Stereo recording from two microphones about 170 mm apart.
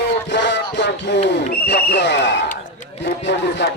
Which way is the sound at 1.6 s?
85° left.